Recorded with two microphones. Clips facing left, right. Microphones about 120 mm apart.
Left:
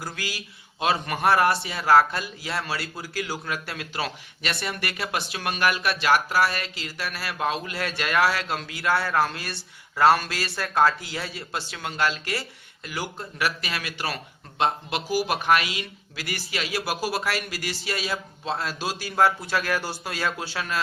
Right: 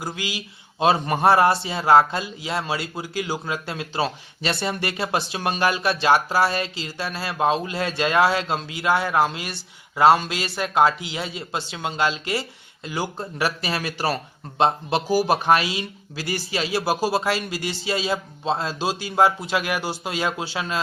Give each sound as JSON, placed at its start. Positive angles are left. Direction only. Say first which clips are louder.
{"t": 0.0, "sound": "a man's voice", "louder": "right 4 dB", "side_deg": -20}